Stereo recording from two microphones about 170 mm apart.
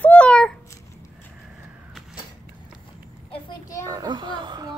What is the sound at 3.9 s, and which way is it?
Speech, 25° right (ahead or behind).